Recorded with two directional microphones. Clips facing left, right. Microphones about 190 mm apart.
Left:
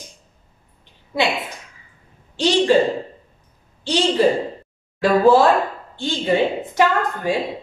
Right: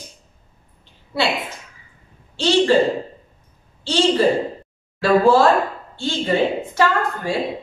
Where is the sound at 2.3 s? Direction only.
15° left (ahead or behind).